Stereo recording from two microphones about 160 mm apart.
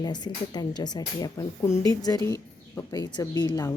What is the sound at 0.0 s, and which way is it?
Speech, 25° left (ahead or behind).